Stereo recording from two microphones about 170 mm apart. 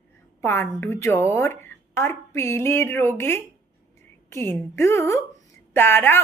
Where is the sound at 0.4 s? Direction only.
15° left (ahead or behind).